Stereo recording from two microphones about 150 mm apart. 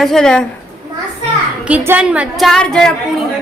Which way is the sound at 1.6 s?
10° right (ahead or behind).